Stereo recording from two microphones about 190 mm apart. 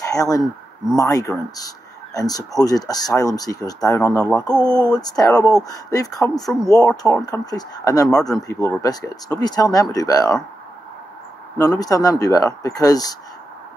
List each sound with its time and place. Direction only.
0.0 s speech: 15° left (ahead or behind)
11.5 s speech: 15° left (ahead or behind)